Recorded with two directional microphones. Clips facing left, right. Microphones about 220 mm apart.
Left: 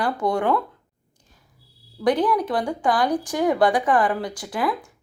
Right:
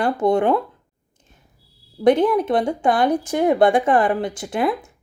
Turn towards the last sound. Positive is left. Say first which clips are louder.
# right 4 dB
turn(degrees=-25)  # may be behind; listen again after turning